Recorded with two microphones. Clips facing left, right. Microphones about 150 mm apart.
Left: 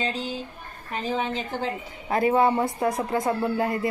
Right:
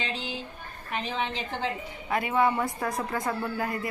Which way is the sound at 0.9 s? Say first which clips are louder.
Left 4 dB; 40° left (ahead or behind).